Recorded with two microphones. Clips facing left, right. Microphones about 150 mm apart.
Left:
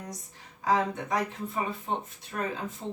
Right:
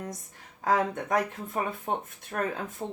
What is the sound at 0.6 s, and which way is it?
Speech, 50° right (ahead or behind).